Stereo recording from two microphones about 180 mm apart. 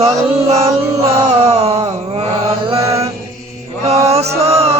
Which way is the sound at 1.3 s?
35° right (ahead or behind).